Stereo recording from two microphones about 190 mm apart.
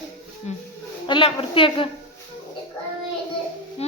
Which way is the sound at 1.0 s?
25° left (ahead or behind).